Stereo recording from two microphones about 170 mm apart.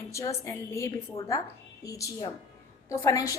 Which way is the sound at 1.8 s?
20° left (ahead or behind).